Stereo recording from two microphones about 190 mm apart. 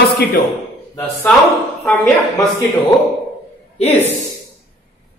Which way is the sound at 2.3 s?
20° left (ahead or behind).